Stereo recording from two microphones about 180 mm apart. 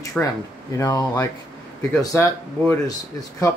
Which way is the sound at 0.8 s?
20° left (ahead or behind).